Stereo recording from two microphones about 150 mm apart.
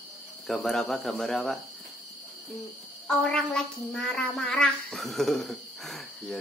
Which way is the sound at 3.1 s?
5° left (ahead or behind).